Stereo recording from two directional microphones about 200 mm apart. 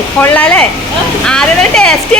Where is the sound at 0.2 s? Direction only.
5° left (ahead or behind).